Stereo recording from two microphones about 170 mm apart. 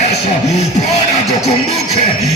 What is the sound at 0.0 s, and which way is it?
Music, 40° left (ahead or behind).